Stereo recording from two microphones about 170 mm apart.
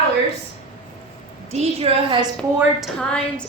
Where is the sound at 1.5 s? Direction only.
35° right (ahead or behind).